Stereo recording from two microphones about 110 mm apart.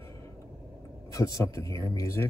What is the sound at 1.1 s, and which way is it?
A man's voice, 30° left (ahead or behind).